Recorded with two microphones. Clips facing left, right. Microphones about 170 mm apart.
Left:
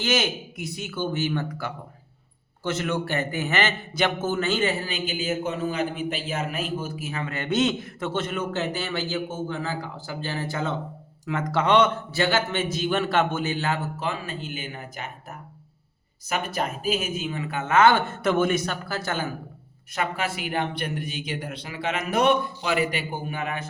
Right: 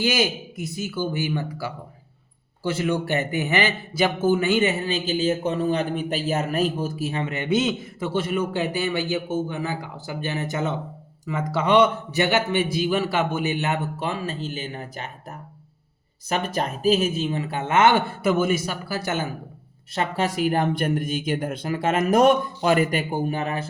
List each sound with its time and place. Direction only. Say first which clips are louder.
0.0 s a man's voice: right 2 dB; 10° right (ahead or behind); by 6.9 s 40° right (ahead or behind)
7.0 s a man's voice: right 4 dB; 25° right (ahead or behind)
16.6 s speech: right 8 dB; 30° right (ahead or behind)
17.9 s a man's voice: right 2 dB; 5° right (ahead or behind)
19.9 s speech: right 3 dB; 35° right (ahead or behind)